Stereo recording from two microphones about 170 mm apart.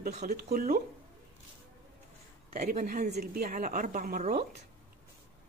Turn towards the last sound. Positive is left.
turn(degrees=-50)  # may be behind; listen again after turning